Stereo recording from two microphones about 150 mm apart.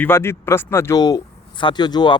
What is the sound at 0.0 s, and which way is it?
Speech, 15° left (ahead or behind).